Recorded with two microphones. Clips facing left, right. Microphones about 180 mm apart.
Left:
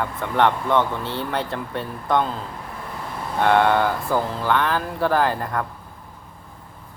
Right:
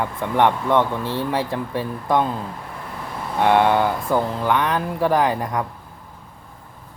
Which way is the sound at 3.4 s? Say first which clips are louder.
Right 1 dB; 10° right (ahead or behind).